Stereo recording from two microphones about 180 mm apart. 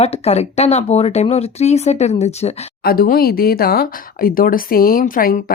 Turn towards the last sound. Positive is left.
turn(degrees=55)  # may be behind; listen again after turning